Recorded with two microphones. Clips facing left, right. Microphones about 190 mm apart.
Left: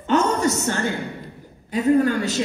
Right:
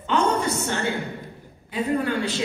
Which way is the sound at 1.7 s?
40° left (ahead or behind).